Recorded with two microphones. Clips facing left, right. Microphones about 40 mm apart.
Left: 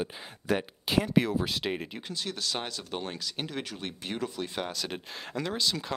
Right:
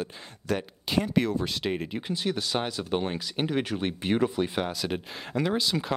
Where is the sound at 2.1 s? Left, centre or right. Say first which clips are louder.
Right 5 dB; centre.